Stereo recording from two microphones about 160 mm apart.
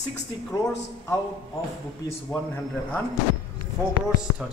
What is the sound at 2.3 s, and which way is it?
Speech, 10° left (ahead or behind).